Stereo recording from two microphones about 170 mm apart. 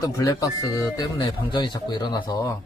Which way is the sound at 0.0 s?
20° left (ahead or behind).